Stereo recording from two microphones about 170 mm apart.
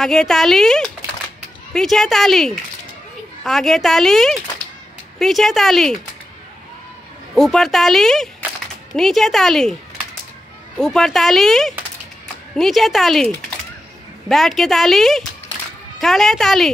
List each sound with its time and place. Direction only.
0.0 s a woman's voice: 5° left (ahead or behind)
7.3 s a woman's voice: 5° left (ahead or behind)
10.8 s a woman's voice: centre (ahead or behind)